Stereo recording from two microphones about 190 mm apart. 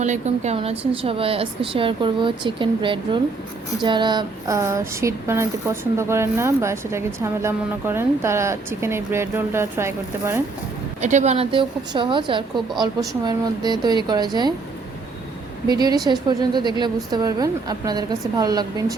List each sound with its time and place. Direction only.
0.0 s a woman's voice: 35° right (ahead or behind)
3.8 s a sound: 25° right (ahead or behind)
11.0 s a woman's voice: 35° right (ahead or behind)
15.6 s a woman's voice: 20° right (ahead or behind)